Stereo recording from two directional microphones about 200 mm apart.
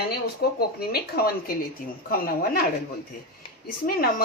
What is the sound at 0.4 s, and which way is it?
A woman's voice, 50° left (ahead or behind).